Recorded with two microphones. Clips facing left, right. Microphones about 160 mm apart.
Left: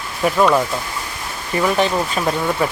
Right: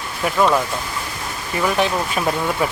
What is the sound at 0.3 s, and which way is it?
Speech, 5° left (ahead or behind).